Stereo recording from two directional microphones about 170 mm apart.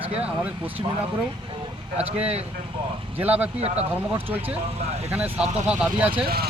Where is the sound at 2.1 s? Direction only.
5° right (ahead or behind).